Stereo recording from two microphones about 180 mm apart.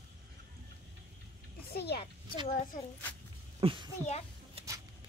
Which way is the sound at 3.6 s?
25° right (ahead or behind).